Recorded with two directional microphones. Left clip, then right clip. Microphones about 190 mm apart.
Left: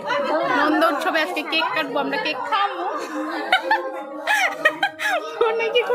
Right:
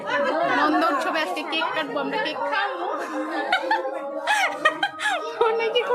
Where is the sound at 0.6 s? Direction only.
10° left (ahead or behind).